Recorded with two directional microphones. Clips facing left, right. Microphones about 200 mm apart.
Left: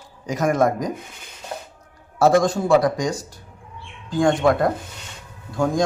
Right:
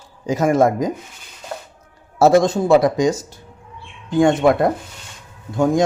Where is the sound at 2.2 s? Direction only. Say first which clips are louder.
Right 3 dB; 25° right (ahead or behind).